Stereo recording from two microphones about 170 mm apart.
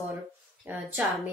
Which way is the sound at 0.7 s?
10° right (ahead or behind).